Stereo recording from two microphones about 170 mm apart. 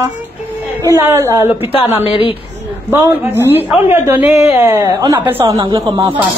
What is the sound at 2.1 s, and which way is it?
Speech, 30° left (ahead or behind).